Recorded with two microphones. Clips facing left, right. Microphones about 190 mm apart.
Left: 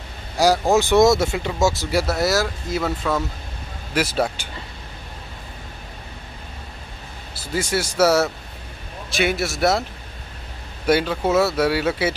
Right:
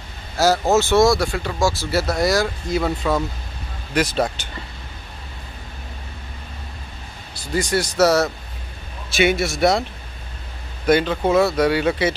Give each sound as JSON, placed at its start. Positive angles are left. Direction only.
{"t": 0.4, "sound": "speech", "side_deg": 15}
{"t": 7.3, "sound": "speech", "side_deg": 5}
{"t": 10.9, "sound": "speech", "side_deg": 5}